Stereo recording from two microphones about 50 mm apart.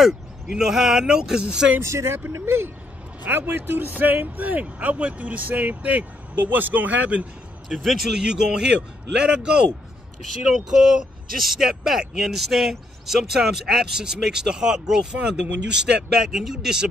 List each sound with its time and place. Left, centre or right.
0.0 s speech: centre
1.8 s speech: right
2.3 s speech: right
3.3 s speech: right
7.7 s speech: centre